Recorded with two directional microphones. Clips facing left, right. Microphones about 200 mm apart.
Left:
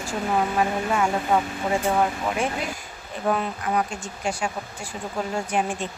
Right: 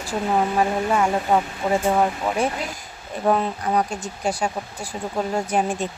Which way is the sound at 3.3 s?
35° right (ahead or behind).